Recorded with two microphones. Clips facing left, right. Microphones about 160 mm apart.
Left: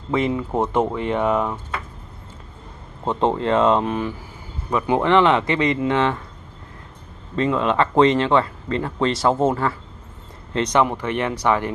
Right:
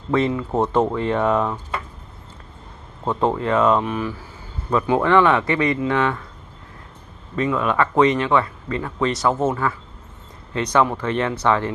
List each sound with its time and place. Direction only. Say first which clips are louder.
0.1 s speech: right 1 dB; 20° left (ahead or behind)
3.1 s speech: left 1 dB; 25° left (ahead or behind)
4.6 s speech: right 1 dB; 15° left (ahead or behind)
7.3 s speech: left 1 dB; 25° left (ahead or behind)